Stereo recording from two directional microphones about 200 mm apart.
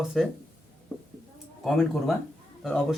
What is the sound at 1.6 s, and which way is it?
Speech, centre (ahead or behind).